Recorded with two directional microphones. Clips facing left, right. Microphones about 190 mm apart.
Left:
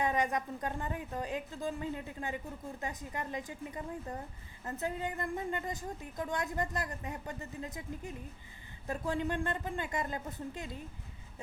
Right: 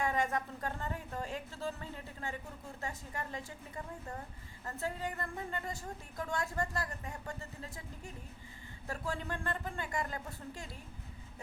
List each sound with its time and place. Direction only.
0.0 s a woman's voice: 20° left (ahead or behind)